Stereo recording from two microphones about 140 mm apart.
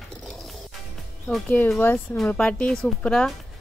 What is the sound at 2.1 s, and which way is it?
A woman's voice, 5° left (ahead or behind).